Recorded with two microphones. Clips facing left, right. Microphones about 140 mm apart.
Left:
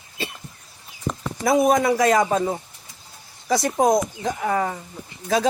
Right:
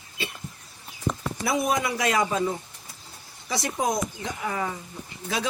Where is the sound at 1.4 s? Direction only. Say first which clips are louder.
Left 8 dB; 45° left (ahead or behind).